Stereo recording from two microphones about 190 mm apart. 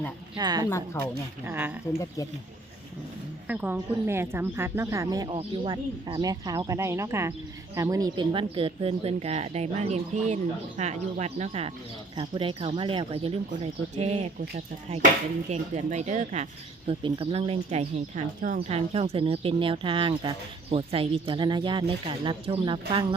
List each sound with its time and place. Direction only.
0.3 s speech: 20° right (ahead or behind)
0.9 s a woman's voice: 15° left (ahead or behind)
1.5 s speech: 10° right (ahead or behind)
3.4 s a woman's voice: 10° right (ahead or behind); by 23.0 s 25° right (ahead or behind)